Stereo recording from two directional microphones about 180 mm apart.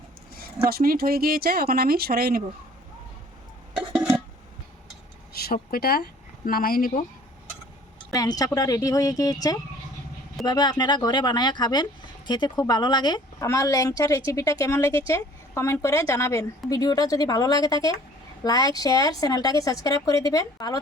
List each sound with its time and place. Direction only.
0.3 s speech: 55° right (ahead or behind)
5.7 s speech: 60° left (ahead or behind)
8.1 s a woman's voice: 20° left (ahead or behind)